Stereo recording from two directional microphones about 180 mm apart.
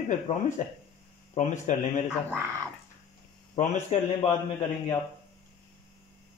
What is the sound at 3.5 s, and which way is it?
Speech, 40° left (ahead or behind).